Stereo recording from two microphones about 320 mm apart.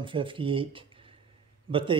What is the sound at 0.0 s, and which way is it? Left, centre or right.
Speech, centre.